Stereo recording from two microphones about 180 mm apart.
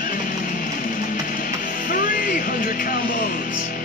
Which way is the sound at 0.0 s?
45° left (ahead or behind).